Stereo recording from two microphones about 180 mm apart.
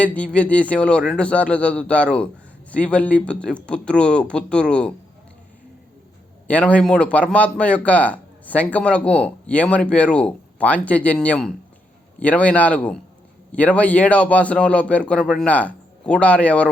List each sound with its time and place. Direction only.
0.0 s a man's voice: 5° left (ahead or behind)
6.5 s a man's voice: 5° left (ahead or behind)